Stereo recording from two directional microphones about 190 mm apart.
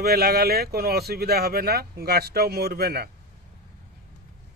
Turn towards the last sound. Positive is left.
turn(degrees=-55)  # may be behind; listen again after turning